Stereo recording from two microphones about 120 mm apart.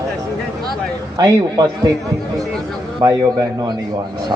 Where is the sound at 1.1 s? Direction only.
30° right (ahead or behind).